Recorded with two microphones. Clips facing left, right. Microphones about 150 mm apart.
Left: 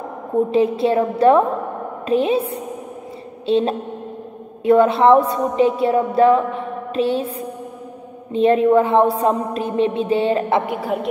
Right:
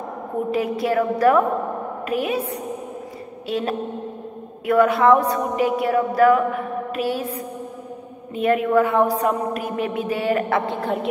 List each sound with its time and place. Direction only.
0.5 s a woman's voice: 25° left (ahead or behind)
10.7 s a woman's voice: 5° left (ahead or behind)